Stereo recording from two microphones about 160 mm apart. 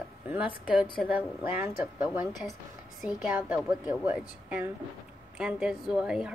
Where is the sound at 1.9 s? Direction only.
10° right (ahead or behind).